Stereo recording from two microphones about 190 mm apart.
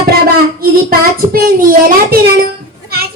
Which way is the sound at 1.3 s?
50° right (ahead or behind).